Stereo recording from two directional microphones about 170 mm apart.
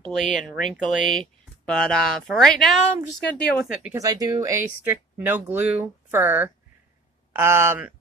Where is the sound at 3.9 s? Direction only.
20° right (ahead or behind).